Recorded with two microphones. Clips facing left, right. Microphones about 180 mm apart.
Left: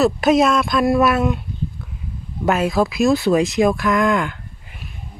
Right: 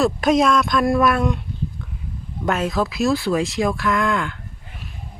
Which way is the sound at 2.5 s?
10° left (ahead or behind).